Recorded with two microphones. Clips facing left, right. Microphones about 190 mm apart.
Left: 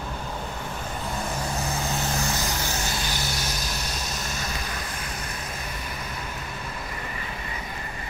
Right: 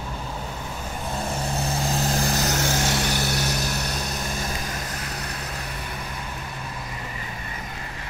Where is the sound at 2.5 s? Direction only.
90° right; by 3.6 s 65° right (ahead or behind).